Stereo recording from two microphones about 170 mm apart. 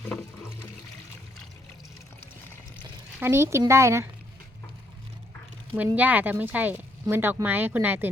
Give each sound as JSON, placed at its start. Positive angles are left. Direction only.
{"t": 3.2, "sound": "speech", "side_deg": -15}
{"t": 5.7, "sound": "speech", "side_deg": -10}